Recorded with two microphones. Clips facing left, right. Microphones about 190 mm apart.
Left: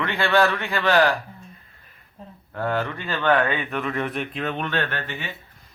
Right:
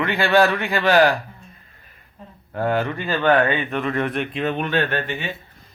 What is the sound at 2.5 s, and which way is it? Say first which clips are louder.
Speech: right 4 dB; 15° right (ahead or behind).